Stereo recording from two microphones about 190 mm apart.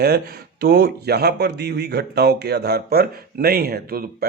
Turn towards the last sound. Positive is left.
turn(degrees=-55)  # may be behind; listen again after turning